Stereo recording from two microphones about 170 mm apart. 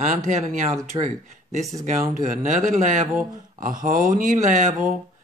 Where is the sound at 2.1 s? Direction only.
50° right (ahead or behind).